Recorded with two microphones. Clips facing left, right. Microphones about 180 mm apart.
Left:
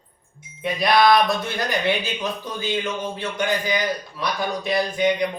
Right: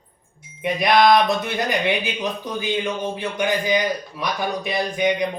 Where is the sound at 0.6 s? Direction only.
20° right (ahead or behind).